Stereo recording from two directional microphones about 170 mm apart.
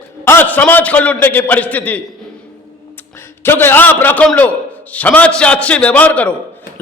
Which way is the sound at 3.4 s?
15° left (ahead or behind).